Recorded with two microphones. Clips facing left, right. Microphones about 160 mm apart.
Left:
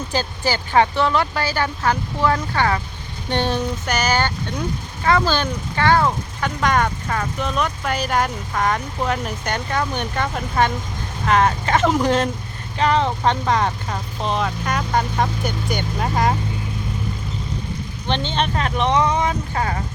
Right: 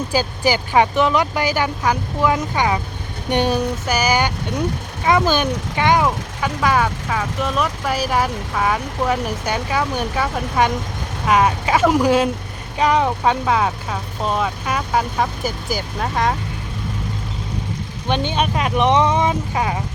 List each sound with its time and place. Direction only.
0.1 s speech: 10° right (ahead or behind)
18.1 s speech: 10° right (ahead or behind)